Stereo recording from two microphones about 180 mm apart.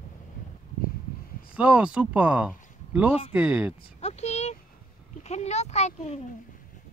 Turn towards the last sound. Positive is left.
turn(degrees=40)  # may be behind; listen again after turning